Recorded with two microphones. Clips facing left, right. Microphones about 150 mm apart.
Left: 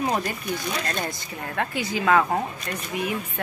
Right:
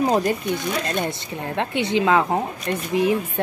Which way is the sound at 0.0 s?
30° right (ahead or behind).